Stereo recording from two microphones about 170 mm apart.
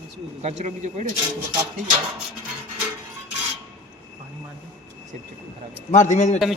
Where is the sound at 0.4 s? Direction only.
40° right (ahead or behind).